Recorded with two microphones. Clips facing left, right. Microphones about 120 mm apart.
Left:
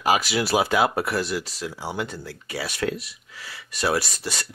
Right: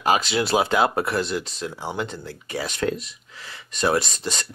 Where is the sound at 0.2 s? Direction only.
25° right (ahead or behind).